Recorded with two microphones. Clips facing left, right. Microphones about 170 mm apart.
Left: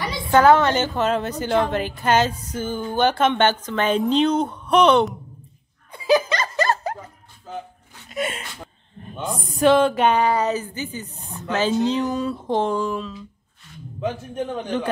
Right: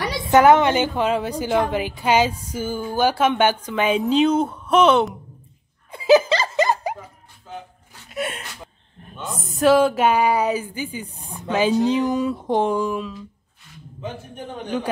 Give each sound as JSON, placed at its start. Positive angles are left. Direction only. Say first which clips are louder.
{"t": 0.3, "sound": "a woman's voice", "louder": "right 1 dB", "side_deg": -15}
{"t": 5.9, "sound": "laughter", "louder": "right 4 dB", "side_deg": -25}
{"t": 8.1, "sound": "a sound", "louder": "left 1 dB", "side_deg": 0}
{"t": 9.0, "sound": "a woman's voice", "louder": "left 3 dB", "side_deg": 0}